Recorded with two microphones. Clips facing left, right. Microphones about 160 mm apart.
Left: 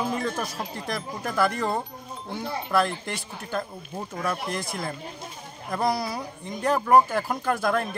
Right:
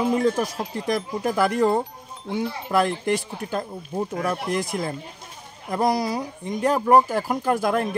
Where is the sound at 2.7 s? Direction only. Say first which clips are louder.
Right 4 dB; 15° right (ahead or behind).